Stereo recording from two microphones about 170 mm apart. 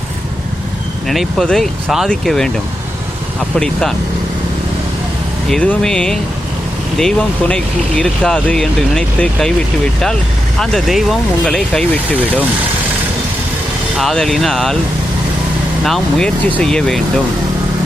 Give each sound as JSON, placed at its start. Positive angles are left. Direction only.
{"t": 1.0, "sound": "speech", "side_deg": 0}
{"t": 3.5, "sound": "speech", "side_deg": 5}
{"t": 5.5, "sound": "speech", "side_deg": 5}
{"t": 10.6, "sound": "speech", "side_deg": 5}
{"t": 14.0, "sound": "speech", "side_deg": 0}
{"t": 15.8, "sound": "speech", "side_deg": 5}